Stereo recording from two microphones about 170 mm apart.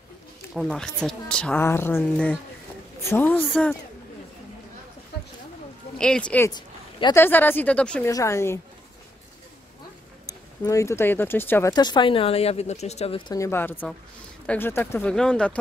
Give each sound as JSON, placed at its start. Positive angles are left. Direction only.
{"t": 0.6, "sound": "speech", "side_deg": 5}
{"t": 5.9, "sound": "speech", "side_deg": 5}
{"t": 6.5, "sound": "a sound", "side_deg": 25}
{"t": 7.2, "sound": "speech", "side_deg": 10}
{"t": 8.1, "sound": "speech", "side_deg": 15}
{"t": 10.2, "sound": "speech", "side_deg": 20}
{"t": 11.7, "sound": "speech", "side_deg": 25}
{"t": 13.3, "sound": "speech", "side_deg": 15}